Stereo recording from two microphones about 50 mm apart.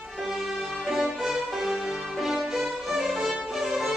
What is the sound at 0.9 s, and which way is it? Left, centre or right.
Music, centre.